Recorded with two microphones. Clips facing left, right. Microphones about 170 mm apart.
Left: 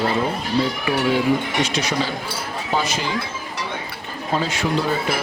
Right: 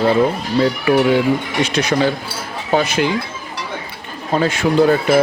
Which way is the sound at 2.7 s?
60° right (ahead or behind).